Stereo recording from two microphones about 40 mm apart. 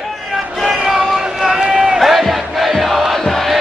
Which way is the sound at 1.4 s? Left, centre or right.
Centre.